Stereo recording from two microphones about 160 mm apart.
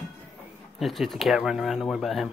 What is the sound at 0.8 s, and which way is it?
Speech, centre (ahead or behind).